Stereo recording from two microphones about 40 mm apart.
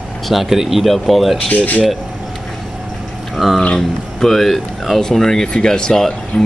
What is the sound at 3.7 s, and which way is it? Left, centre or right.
Speech, centre.